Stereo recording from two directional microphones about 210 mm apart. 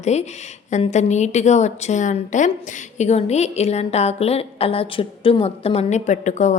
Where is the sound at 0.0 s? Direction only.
30° left (ahead or behind).